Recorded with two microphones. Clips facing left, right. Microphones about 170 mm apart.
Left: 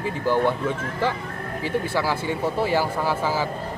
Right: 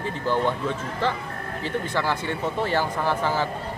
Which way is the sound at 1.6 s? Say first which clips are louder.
Left 2 dB; 10° left (ahead or behind).